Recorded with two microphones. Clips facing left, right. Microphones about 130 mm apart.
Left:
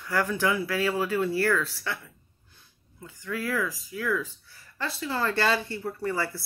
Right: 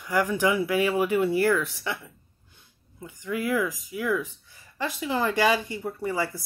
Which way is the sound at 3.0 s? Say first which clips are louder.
Right 3 dB; 15° right (ahead or behind).